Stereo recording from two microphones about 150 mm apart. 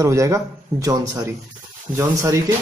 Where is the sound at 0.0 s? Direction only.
20° right (ahead or behind).